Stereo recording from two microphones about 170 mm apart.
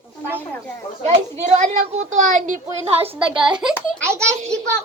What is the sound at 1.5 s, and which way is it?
A woman's voice, 40° right (ahead or behind).